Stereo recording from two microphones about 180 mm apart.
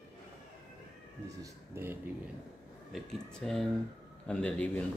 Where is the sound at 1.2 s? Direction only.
15° right (ahead or behind).